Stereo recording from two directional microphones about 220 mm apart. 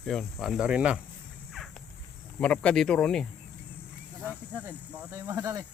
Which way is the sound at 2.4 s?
5° left (ahead or behind).